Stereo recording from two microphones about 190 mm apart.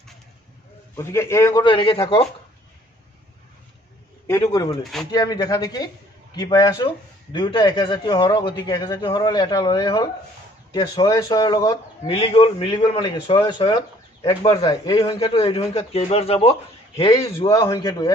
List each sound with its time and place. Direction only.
0.9 s a man's voice: 15° left (ahead or behind)
4.3 s a man's voice: 15° left (ahead or behind)